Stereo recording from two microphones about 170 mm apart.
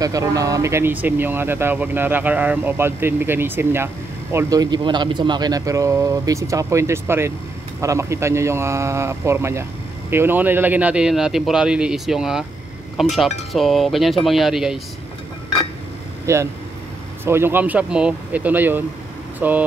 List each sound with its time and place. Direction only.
0.0 s speech: 20° right (ahead or behind); by 14.8 s centre (ahead or behind)
16.3 s speech: 15° right (ahead or behind)